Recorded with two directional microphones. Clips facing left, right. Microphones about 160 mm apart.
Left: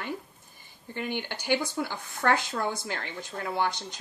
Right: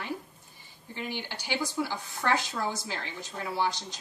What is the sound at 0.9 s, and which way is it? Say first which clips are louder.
Speech: left 3 dB; 55° left (ahead or behind).